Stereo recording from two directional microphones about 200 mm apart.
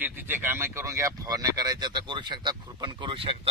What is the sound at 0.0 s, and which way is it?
Speech, 10° right (ahead or behind).